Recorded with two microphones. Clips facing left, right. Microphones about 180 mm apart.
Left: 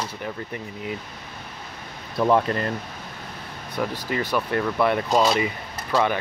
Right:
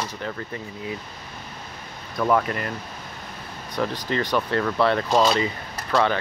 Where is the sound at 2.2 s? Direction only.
25° left (ahead or behind).